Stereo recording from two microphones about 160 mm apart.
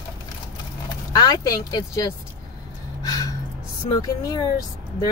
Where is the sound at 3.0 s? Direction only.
20° left (ahead or behind).